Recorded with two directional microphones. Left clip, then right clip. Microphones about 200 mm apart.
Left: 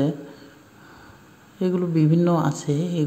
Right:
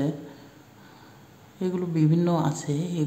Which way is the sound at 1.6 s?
15° left (ahead or behind).